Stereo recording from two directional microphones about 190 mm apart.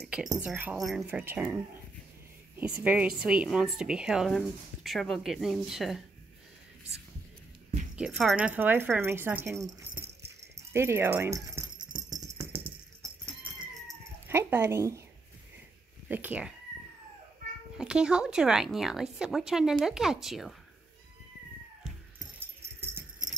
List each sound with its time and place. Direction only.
0.0 s a woman's voice: 5° right (ahead or behind)
7.9 s speech: 5° right (ahead or behind)
11.9 s music: 40° right (ahead or behind)
12.3 s tambourine: 15° right (ahead or behind)
14.2 s speech: 10° right (ahead or behind)
16.1 s speech: 10° right (ahead or behind)
17.7 s a woman's voice: 5° right (ahead or behind)
22.8 s jingle bell: 10° right (ahead or behind)